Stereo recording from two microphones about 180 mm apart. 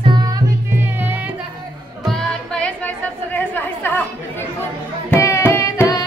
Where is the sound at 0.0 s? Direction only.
25° right (ahead or behind).